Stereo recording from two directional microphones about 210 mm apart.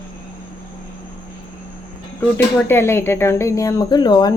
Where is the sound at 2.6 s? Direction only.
10° left (ahead or behind).